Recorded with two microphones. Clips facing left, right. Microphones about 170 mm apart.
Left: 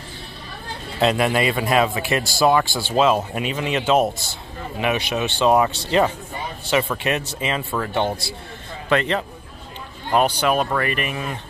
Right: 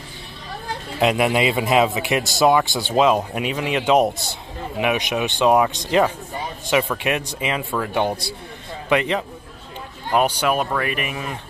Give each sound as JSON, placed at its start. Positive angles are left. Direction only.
{"t": 0.9, "sound": "a man's voice", "side_deg": -15}